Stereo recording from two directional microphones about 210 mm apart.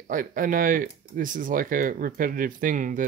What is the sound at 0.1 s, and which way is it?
Speech, 40° right (ahead or behind).